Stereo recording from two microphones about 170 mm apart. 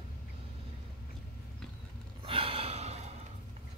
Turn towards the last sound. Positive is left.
turn(degrees=-40)  # may be behind; listen again after turning